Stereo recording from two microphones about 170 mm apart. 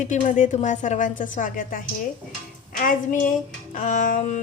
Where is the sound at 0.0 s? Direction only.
45° left (ahead or behind).